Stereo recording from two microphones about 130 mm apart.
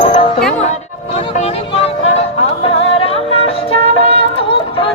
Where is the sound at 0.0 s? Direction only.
40° left (ahead or behind).